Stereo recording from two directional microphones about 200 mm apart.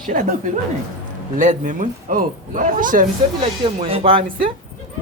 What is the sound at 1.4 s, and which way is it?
A man's voice, 40° right (ahead or behind).